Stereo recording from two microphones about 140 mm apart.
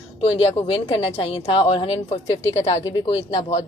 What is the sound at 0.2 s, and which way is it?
A woman's voice, 45° left (ahead or behind).